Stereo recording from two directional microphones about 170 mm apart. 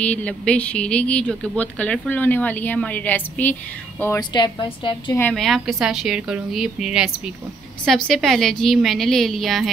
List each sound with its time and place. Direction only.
0.0 s speech: 10° left (ahead or behind)
4.2 s a woman's voice: 25° left (ahead or behind)
5.3 s a woman's voice: centre (ahead or behind)